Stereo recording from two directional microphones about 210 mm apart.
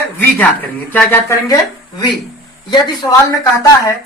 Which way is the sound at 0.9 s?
10° left (ahead or behind).